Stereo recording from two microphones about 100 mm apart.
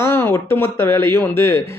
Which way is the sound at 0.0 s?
25° left (ahead or behind).